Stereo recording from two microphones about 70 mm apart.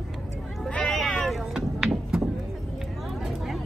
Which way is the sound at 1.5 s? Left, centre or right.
Centre.